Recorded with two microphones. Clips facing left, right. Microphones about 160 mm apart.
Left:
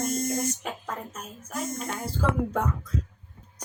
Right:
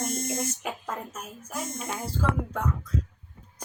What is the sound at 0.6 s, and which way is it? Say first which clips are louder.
A woman's voice: right 1 dB; 5° right (ahead or behind).